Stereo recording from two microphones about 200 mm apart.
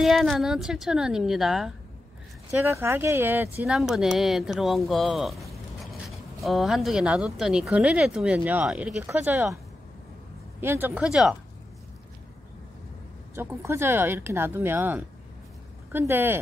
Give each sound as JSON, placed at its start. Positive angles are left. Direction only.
{"t": 0.0, "sound": "speech", "side_deg": 0}
{"t": 2.6, "sound": "speech", "side_deg": -15}
{"t": 10.6, "sound": "speech", "side_deg": -10}
{"t": 13.3, "sound": "speech", "side_deg": -10}